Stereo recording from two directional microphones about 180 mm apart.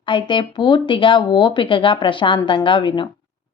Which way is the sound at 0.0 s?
25° left (ahead or behind).